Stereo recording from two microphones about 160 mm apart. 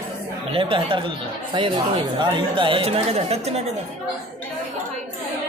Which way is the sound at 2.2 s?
30° right (ahead or behind).